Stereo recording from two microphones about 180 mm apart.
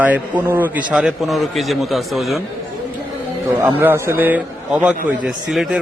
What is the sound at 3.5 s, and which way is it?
A man's voice, 10° right (ahead or behind).